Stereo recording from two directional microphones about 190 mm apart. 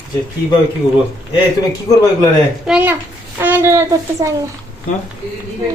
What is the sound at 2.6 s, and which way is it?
A woman's voice, 10° right (ahead or behind).